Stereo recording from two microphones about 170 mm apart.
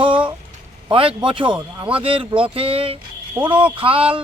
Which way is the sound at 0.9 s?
30° right (ahead or behind).